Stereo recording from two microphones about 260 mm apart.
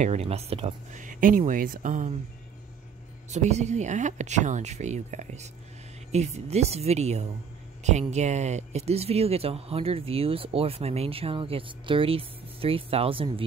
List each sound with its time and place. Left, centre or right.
0.0 s speech: right
3.3 s speech: right